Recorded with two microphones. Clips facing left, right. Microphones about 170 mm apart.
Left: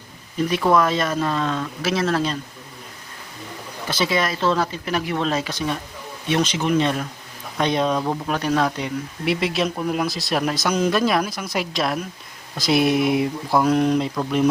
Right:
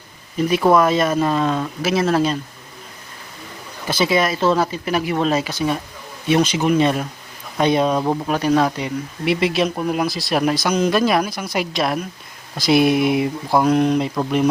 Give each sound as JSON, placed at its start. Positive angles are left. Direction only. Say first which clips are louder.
{"t": 0.4, "sound": "speech", "louder": "right 4 dB", "side_deg": -10}
{"t": 3.8, "sound": "speech", "louder": "right 4 dB", "side_deg": -10}